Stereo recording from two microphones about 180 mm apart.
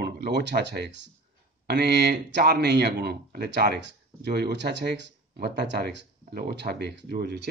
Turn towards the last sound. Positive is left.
turn(degrees=-65)  # may be behind; listen again after turning